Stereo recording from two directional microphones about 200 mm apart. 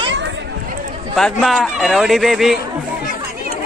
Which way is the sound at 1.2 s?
Centre (ahead or behind).